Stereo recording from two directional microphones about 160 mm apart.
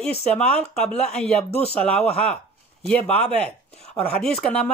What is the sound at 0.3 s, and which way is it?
Speech, 5° left (ahead or behind).